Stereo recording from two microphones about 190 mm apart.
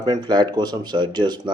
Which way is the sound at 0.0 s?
20° right (ahead or behind).